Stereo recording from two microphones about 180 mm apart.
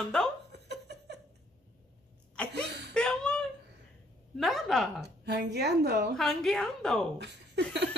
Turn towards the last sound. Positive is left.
turn(degrees=-70)  # may be behind; listen again after turning